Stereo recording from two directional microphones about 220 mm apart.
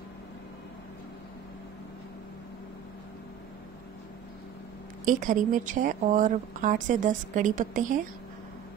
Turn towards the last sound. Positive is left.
turn(degrees=-35)  # may be behind; listen again after turning